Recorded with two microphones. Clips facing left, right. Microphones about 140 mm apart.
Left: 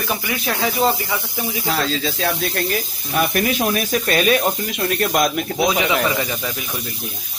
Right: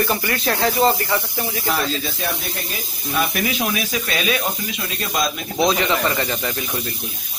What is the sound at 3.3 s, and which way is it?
Speech, 45° left (ahead or behind).